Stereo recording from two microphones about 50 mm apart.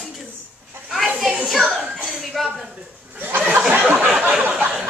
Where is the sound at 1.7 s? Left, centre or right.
Centre.